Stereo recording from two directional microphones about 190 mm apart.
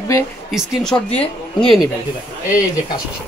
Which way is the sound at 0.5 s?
Centre (ahead or behind).